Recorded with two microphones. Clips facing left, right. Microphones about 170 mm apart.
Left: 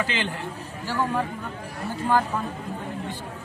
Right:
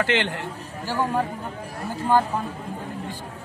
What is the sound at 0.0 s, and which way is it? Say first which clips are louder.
Speech: right 4 dB; 70° right (ahead or behind).